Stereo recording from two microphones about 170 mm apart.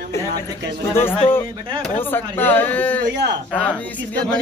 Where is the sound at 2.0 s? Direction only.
10° left (ahead or behind).